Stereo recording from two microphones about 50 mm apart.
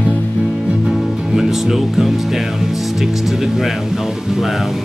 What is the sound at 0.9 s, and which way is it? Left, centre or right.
Music, centre.